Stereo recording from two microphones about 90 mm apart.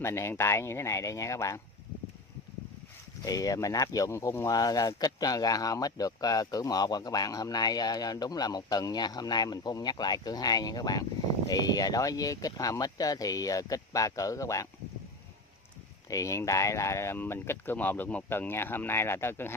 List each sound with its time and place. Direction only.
0.0 s speech: 30° left (ahead or behind)
3.3 s speech: 40° left (ahead or behind)
4.6 s speech: 45° left (ahead or behind)
16.1 s speech: 35° left (ahead or behind)